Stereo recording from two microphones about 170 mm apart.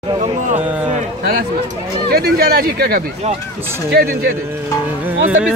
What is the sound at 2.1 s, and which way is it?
Speech, 65° right (ahead or behind).